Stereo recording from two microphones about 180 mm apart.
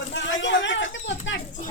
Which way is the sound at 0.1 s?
90° left.